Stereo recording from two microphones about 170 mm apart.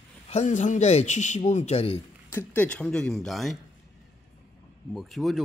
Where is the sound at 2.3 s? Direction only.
10° left (ahead or behind).